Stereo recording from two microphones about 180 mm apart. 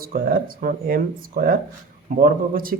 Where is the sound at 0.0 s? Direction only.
55° right (ahead or behind).